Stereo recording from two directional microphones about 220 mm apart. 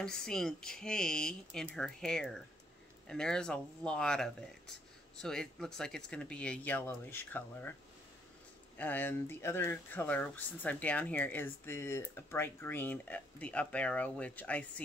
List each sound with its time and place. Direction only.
0.0 s speech: 5° left (ahead or behind)
8.7 s speech: 10° left (ahead or behind)